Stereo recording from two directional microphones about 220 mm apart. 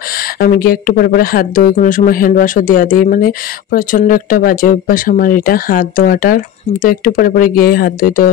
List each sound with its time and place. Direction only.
0.4 s speech: 40° left (ahead or behind)